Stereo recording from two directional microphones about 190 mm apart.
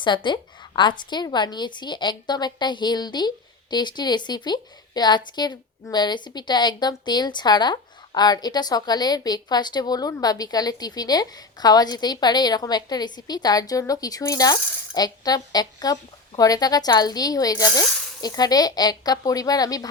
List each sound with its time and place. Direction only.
0.0 s a woman's voice: 25° left (ahead or behind)